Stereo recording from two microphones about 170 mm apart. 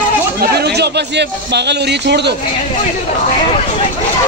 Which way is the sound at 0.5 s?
75° right (ahead or behind).